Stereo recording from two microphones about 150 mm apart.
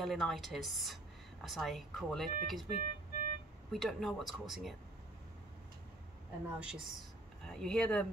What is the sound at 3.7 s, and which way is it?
A woman's voice, centre (ahead or behind).